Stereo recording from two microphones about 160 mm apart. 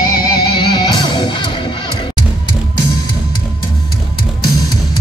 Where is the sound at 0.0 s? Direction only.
25° left (ahead or behind).